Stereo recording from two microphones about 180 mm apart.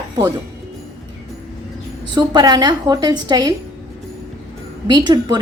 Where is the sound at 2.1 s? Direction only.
20° right (ahead or behind).